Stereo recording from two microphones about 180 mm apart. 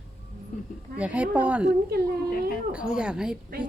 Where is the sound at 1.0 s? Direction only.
5° right (ahead or behind).